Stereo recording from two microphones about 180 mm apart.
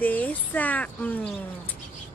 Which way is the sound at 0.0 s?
10° left (ahead or behind).